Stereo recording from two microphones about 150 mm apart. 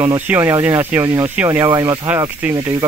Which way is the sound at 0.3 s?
15° right (ahead or behind).